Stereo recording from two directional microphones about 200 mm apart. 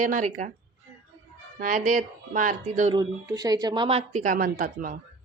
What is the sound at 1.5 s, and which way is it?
A woman's voice, 40° right (ahead or behind).